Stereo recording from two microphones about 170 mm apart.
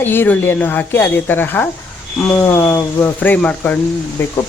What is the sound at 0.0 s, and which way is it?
A woman's voice, 10° left (ahead or behind).